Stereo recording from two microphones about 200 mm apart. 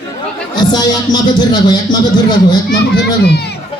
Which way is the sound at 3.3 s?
55° left (ahead or behind).